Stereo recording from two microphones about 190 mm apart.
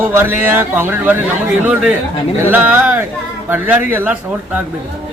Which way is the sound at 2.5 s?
10° right (ahead or behind).